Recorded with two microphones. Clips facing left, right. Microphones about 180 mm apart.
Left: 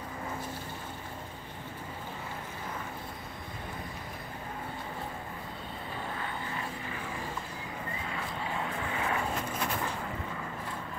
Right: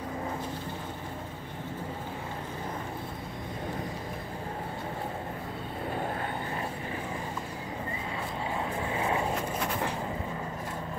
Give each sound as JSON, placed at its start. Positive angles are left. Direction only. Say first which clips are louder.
{"t": 8.9, "sound": "vehicle", "louder": "right 4 dB", "side_deg": -25}